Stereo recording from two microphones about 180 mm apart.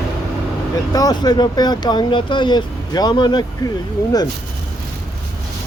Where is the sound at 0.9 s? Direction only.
20° left (ahead or behind).